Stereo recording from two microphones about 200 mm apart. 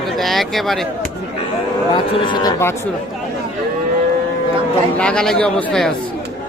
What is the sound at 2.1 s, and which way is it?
Speech, 25° left (ahead or behind).